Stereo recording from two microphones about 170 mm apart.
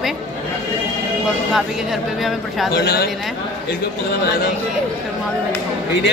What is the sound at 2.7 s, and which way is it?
Speech, 70° left (ahead or behind).